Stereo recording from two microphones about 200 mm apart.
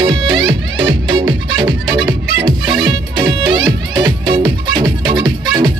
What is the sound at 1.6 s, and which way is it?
Music, 20° right (ahead or behind).